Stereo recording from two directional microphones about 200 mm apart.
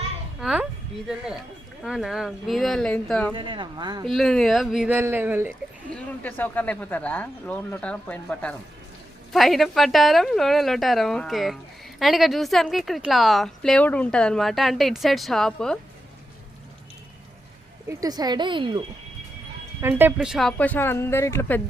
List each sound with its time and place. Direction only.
0.3 s speech: 5° right (ahead or behind)
3.3 s speech: 25° right (ahead or behind)
4.1 s speech: centre (ahead or behind)
5.9 s speech: 5° left (ahead or behind)
17.8 s speech: 20° right (ahead or behind)
19.8 s speech: 10° right (ahead or behind); by 21.6 s 10° left (ahead or behind)